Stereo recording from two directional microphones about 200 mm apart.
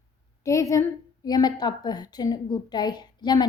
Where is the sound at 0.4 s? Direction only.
15° left (ahead or behind).